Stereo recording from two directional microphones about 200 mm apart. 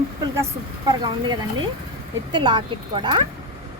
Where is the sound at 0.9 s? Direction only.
20° right (ahead or behind).